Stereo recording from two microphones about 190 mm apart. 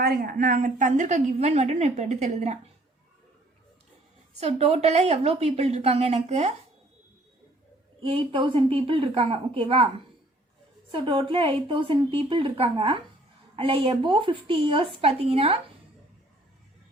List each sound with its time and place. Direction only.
0.0 s a woman's voice: 50° right (ahead or behind)
4.4 s a woman's voice: 35° right (ahead or behind)
8.0 s a woman's voice: 30° right (ahead or behind)
10.9 s a woman's voice: 25° right (ahead or behind)